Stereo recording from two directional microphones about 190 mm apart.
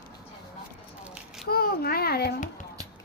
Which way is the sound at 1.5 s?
55° left (ahead or behind).